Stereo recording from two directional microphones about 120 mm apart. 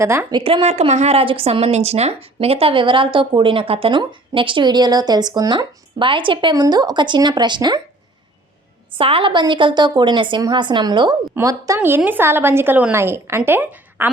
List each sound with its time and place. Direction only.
0.0 s a woman's voice: 25° right (ahead or behind)
0.3 s speech: 45° right (ahead or behind)
0.6 s a woman's voice: 65° right (ahead or behind); by 7.8 s 40° right (ahead or behind)
9.0 s a woman's voice: 50° right (ahead or behind)
11.3 s a woman's voice: 25° right (ahead or behind)
11.8 s a woman's voice: 15° right (ahead or behind)